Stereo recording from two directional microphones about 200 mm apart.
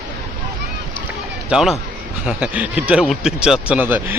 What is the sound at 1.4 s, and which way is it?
Speech, 5° right (ahead or behind).